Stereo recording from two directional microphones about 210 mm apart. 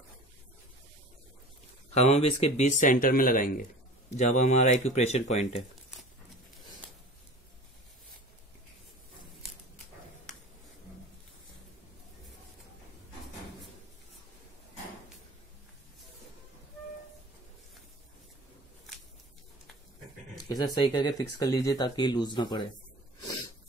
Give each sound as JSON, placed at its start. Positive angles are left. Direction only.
{"t": 2.0, "sound": "speech", "side_deg": 30}
{"t": 20.4, "sound": "speech", "side_deg": 20}